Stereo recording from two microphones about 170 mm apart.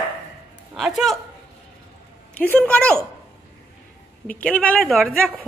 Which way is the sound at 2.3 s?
10° left (ahead or behind).